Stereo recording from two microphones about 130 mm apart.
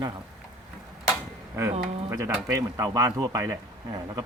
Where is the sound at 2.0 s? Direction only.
20° right (ahead or behind).